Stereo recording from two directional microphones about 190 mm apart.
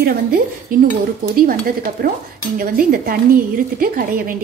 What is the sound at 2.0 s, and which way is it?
Speech, 50° right (ahead or behind).